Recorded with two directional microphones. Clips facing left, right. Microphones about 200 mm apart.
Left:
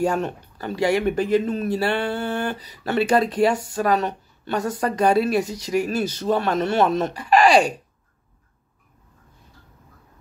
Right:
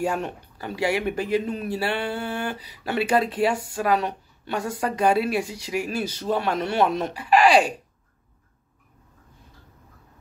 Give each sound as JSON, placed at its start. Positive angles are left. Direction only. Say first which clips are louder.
{"t": 0.0, "sound": "speech", "louder": "left 4 dB", "side_deg": -10}
{"t": 5.6, "sound": "speech", "louder": "left 5 dB", "side_deg": 40}
{"t": 5.9, "sound": "speech", "louder": "left 4 dB", "side_deg": -10}